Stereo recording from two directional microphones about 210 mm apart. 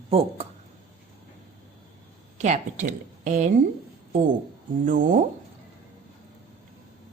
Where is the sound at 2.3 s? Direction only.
35° right (ahead or behind).